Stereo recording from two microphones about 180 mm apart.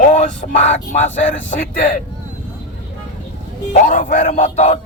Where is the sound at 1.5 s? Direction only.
45° left (ahead or behind).